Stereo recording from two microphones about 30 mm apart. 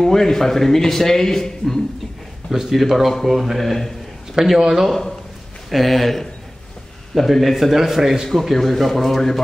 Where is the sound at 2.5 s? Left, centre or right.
Centre.